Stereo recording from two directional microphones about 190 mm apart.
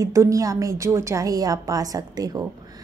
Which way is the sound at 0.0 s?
15° right (ahead or behind).